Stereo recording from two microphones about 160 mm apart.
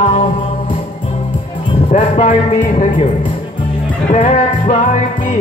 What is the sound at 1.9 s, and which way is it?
Speech, 50° left (ahead or behind).